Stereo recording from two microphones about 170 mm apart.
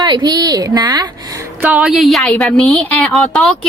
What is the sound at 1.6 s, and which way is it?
A woman's voice, 5° right (ahead or behind).